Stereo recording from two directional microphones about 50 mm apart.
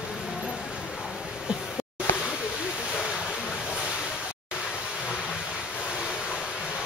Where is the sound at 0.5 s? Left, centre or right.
Centre.